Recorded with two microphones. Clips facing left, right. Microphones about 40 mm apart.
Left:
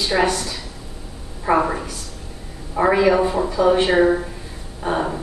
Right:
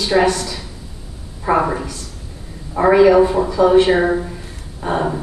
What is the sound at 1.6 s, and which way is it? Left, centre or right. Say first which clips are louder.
A man's voice: right 2 dB; centre.